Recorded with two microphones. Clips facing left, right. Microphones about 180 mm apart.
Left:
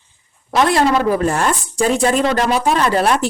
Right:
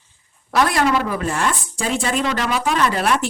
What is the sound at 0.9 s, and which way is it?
Speech, 40° left (ahead or behind).